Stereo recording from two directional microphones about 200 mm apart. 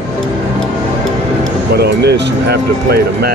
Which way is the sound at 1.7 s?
55° right (ahead or behind).